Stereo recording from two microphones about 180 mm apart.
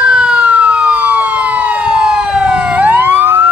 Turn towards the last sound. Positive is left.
turn(degrees=-10)  # may be behind; listen again after turning